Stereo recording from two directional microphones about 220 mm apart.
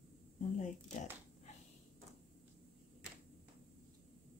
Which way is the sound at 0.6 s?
35° left (ahead or behind).